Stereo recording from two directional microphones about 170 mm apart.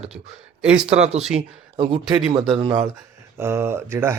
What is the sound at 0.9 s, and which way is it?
Speech, 40° right (ahead or behind).